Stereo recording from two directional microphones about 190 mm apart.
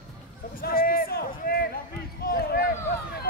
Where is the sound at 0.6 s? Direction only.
50° left (ahead or behind).